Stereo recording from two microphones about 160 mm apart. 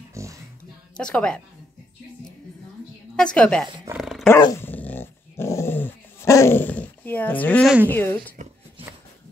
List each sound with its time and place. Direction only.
0.1 s a sound: 20° right (ahead or behind)
0.9 s a woman's voice: 5° left (ahead or behind)
3.2 s a woman's voice: 5° left (ahead or behind)
3.9 s dog: centre (ahead or behind)
4.4 s dog: 20° left (ahead or behind)
7.6 s a woman's voice: 5° right (ahead or behind)
7.9 s speech: 15° left (ahead or behind)